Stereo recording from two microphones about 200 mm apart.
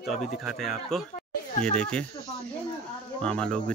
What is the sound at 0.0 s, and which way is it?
Speech, centre (ahead or behind).